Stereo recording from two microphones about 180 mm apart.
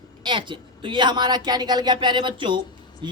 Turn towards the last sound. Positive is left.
turn(degrees=-25)  # may be behind; listen again after turning